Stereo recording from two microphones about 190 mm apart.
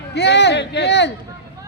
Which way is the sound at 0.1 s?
65° left (ahead or behind).